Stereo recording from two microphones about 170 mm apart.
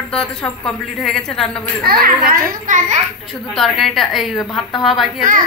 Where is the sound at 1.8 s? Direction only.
60° right (ahead or behind).